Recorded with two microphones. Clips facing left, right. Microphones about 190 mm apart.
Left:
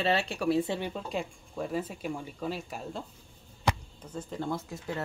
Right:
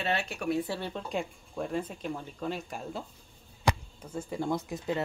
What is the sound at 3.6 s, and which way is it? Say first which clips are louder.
Speech: right 1 dB; 10° right (ahead or behind).